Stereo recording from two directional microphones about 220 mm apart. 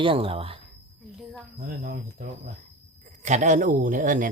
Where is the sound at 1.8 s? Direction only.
40° right (ahead or behind).